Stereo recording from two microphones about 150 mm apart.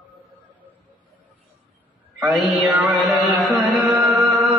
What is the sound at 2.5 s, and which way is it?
Music, centre (ahead or behind).